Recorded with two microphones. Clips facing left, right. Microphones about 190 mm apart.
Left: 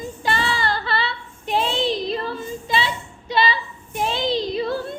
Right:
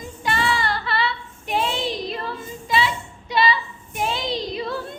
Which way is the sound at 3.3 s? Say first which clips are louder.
Even; 30° left (ahead or behind).